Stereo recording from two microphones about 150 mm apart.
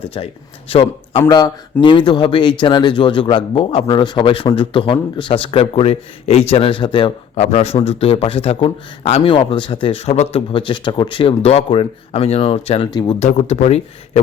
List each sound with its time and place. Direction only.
0.1 s a man's voice: 35° left (ahead or behind)
7.3 s a man's voice: 45° left (ahead or behind)
12.9 s speech: 30° left (ahead or behind)
13.1 s speech: 45° left (ahead or behind)